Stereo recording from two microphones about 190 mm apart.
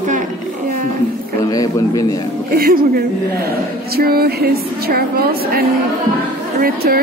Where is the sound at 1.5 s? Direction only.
20° left (ahead or behind).